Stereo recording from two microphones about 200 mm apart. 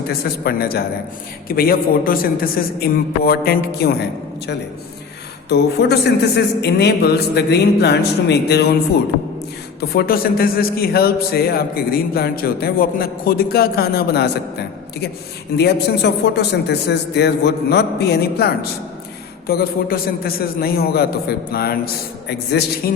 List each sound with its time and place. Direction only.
0.1 s a man's voice: 50° left (ahead or behind)
5.5 s speech: 55° left (ahead or behind)
9.8 s a man's voice: 50° left (ahead or behind)
15.5 s a man's voice: 55° left (ahead or behind)